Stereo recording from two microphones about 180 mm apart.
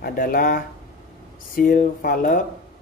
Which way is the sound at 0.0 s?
50° left (ahead or behind).